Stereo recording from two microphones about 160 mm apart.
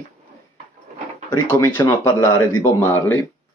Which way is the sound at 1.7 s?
25° left (ahead or behind).